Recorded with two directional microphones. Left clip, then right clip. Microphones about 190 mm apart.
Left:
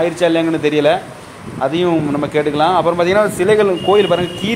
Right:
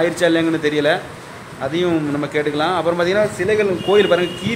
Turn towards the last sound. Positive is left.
turn(degrees=15)  # may be behind; listen again after turning